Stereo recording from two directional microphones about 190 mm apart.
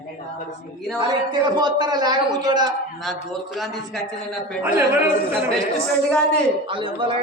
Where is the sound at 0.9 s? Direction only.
25° right (ahead or behind).